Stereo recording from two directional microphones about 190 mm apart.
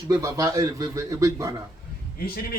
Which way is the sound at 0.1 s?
15° right (ahead or behind).